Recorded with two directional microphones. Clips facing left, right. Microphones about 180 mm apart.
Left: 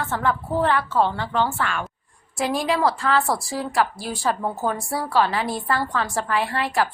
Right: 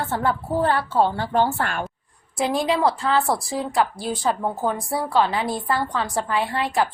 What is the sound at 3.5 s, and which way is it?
A woman's voice, 20° right (ahead or behind).